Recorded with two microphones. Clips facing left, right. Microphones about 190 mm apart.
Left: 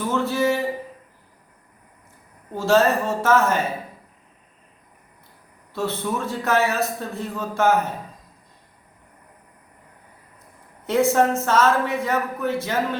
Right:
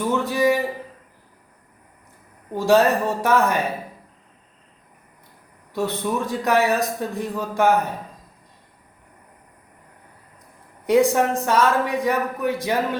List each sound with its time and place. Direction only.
0.1 s a sound: 15° right (ahead or behind)
2.6 s a man's voice: 15° right (ahead or behind)
5.7 s a man's voice: 15° right (ahead or behind)
10.8 s a man's voice: 15° right (ahead or behind)